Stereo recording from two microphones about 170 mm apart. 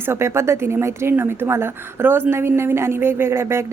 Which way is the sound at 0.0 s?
15° right (ahead or behind).